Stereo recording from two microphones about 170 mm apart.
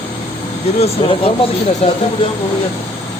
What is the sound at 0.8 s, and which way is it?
Speech, 35° left (ahead or behind).